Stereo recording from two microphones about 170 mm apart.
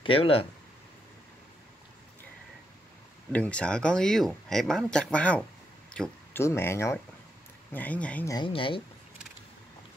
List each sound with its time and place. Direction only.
0.0 s speech: 35° left (ahead or behind)
3.3 s speech: 10° left (ahead or behind)
5.9 s a sound: 5° left (ahead or behind)
6.4 s speech: 15° left (ahead or behind)
8.3 s speech: 30° left (ahead or behind)